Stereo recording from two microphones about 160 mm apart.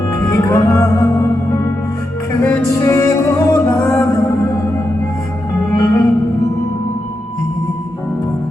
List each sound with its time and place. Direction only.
0.2 s music: 20° left (ahead or behind)
5.8 s music: 25° left (ahead or behind)